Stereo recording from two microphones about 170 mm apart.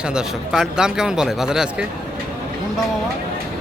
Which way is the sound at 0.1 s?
5° right (ahead or behind).